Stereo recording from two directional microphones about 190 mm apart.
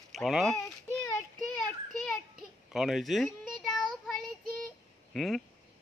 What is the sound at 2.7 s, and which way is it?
Child singing, centre (ahead or behind).